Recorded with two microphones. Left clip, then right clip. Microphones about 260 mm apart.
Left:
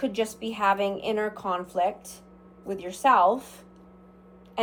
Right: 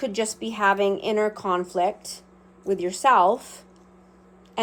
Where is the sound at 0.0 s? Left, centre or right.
Right.